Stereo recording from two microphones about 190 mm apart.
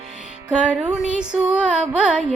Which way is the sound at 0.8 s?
5° right (ahead or behind).